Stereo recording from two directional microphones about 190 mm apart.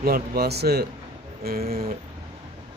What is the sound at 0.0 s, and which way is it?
Speech, 55° right (ahead or behind).